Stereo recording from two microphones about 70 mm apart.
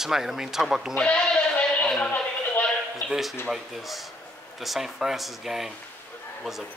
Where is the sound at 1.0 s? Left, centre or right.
Centre.